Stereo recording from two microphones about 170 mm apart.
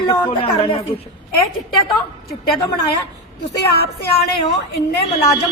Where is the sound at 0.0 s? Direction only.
30° left (ahead or behind).